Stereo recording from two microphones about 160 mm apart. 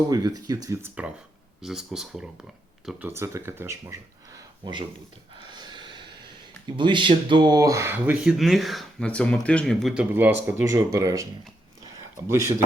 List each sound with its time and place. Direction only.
0.1 s speech: 25° right (ahead or behind)
1.6 s speech: 5° right (ahead or behind)
3.1 s speech: 15° right (ahead or behind)
5.4 s a sound: 30° right (ahead or behind)
6.7 s speech: 30° right (ahead or behind)
11.8 s a sound: 20° right (ahead or behind)